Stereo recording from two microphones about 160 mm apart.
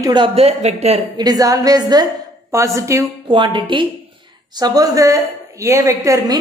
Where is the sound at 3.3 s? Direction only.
30° right (ahead or behind).